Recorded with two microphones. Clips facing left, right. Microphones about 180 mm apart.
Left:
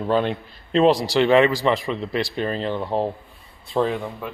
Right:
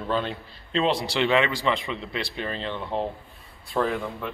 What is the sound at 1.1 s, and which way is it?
Speech, 35° left (ahead or behind).